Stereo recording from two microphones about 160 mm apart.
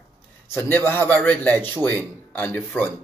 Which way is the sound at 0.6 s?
15° left (ahead or behind).